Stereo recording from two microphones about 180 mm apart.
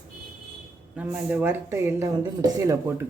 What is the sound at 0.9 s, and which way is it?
Speech, 10° right (ahead or behind).